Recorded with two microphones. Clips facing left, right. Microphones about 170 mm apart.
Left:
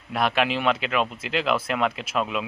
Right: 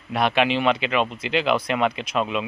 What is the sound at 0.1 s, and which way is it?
A man's voice, centre (ahead or behind).